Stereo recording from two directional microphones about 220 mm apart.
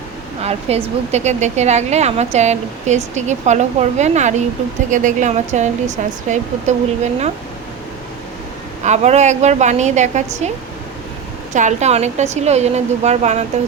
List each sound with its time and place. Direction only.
0.7 s a woman's voice: 30° right (ahead or behind)
8.8 s a woman's voice: 30° right (ahead or behind)
11.5 s a woman's voice: 30° right (ahead or behind)